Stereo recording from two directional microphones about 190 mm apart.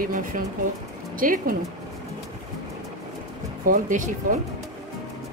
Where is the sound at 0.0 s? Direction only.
45° right (ahead or behind).